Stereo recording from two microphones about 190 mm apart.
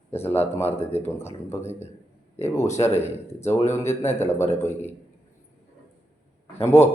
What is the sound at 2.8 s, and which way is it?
Speech, 25° left (ahead or behind).